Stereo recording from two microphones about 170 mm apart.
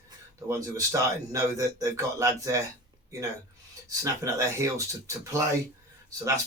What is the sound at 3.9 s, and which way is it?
Speech, 20° right (ahead or behind).